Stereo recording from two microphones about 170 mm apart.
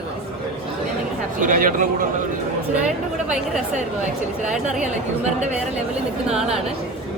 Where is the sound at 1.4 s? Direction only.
55° right (ahead or behind).